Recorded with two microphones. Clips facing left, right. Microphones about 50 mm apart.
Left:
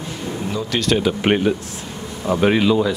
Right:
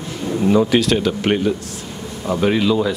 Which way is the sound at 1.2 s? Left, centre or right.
Left.